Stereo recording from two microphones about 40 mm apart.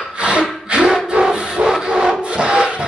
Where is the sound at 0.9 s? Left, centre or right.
Centre.